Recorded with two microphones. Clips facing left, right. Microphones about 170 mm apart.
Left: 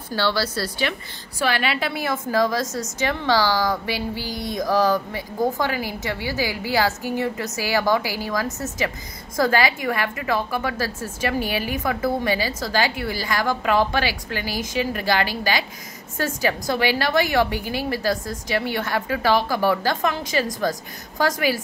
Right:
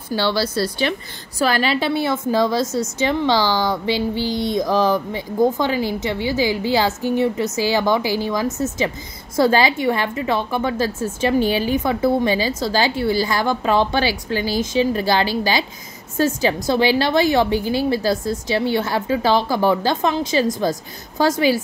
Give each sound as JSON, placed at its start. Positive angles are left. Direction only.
{"t": 0.1, "sound": "a woman's voice", "side_deg": -20}
{"t": 1.4, "sound": "a woman's voice", "side_deg": -35}